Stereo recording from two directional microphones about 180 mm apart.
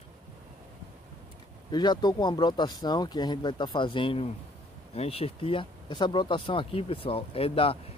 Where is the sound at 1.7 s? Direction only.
25° left (ahead or behind).